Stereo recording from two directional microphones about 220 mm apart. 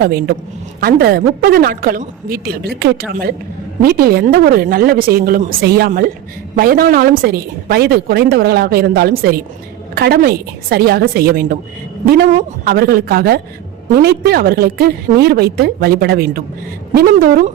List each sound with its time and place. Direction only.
0.0 s a woman's voice: 45° right (ahead or behind)